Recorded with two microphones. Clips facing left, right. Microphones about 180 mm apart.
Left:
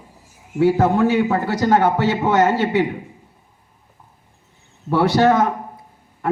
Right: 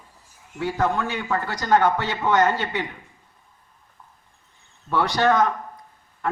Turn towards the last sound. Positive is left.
turn(degrees=25)  # may be behind; listen again after turning